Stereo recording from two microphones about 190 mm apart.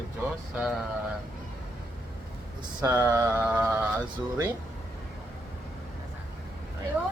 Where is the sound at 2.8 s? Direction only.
15° right (ahead or behind).